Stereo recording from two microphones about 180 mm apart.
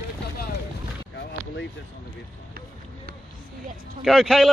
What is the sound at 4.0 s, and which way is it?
Speech, centre (ahead or behind).